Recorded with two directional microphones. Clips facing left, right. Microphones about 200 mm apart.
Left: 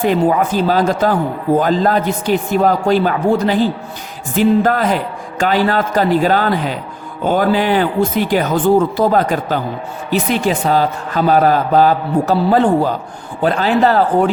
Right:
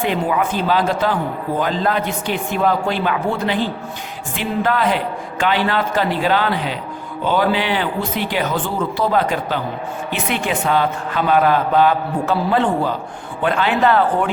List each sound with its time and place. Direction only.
0.0 s a man's voice: 40° left (ahead or behind)